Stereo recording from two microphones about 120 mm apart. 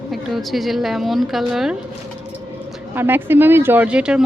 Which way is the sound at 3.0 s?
15° right (ahead or behind).